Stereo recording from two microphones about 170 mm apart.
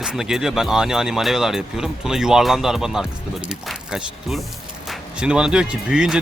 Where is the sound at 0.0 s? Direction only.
5° right (ahead or behind).